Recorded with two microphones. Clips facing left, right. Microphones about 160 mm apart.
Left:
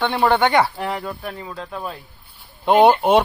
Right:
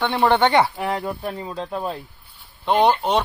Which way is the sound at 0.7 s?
15° right (ahead or behind).